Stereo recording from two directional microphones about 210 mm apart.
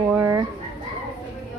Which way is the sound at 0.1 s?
10° right (ahead or behind).